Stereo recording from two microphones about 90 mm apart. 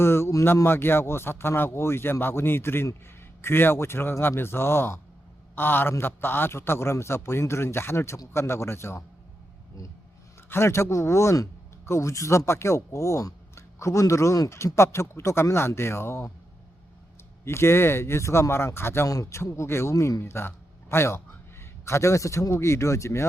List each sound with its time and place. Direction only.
0.0 s a man's voice: 30° left (ahead or behind)
10.5 s speech: 30° left (ahead or behind)
17.4 s a man's voice: 30° left (ahead or behind)
19.0 s a man's voice: 40° left (ahead or behind)